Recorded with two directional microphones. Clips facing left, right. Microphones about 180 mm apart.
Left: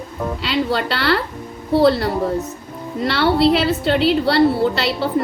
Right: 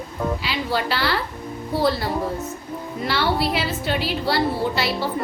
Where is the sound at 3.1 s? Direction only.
70° left (ahead or behind).